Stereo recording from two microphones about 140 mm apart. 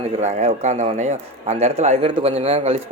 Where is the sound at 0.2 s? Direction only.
50° right (ahead or behind).